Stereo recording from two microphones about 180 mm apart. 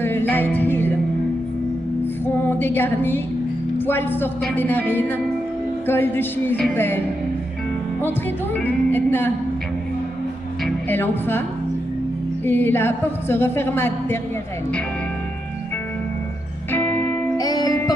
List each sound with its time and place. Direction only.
0.0 s music: 10° left (ahead or behind)
2.2 s music: 10° left (ahead or behind)
3.7 s a woman's voice: 10° left (ahead or behind)
8.6 s a woman's voice: 10° left (ahead or behind)
10.9 s a woman's voice: 10° left (ahead or behind)
12.4 s a woman's voice: 10° left (ahead or behind)
16.7 s music: 10° left (ahead or behind)